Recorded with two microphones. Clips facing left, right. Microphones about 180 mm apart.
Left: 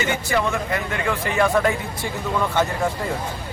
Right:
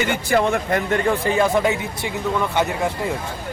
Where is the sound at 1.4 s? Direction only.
20° right (ahead or behind).